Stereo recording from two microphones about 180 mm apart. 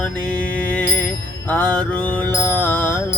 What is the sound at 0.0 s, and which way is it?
Mantra, 5° left (ahead or behind).